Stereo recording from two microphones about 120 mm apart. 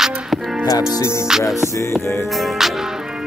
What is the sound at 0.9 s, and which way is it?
Music, 20° left (ahead or behind).